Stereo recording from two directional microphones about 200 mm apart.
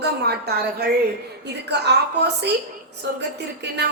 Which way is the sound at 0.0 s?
55° right (ahead or behind).